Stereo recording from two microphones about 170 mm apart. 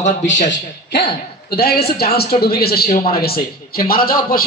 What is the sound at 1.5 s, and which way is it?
A woman's voice, 65° left (ahead or behind).